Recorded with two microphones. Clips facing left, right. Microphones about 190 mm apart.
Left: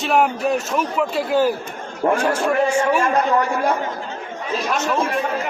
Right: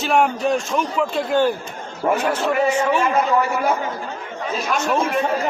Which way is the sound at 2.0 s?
5° right (ahead or behind).